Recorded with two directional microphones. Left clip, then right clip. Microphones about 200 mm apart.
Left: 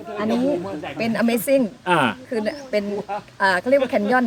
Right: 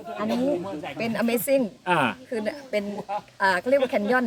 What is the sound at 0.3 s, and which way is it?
Speech, 50° right (ahead or behind).